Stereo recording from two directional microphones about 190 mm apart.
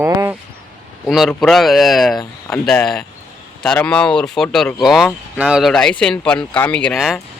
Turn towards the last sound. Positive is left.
turn(degrees=0)  # may be behind; listen again after turning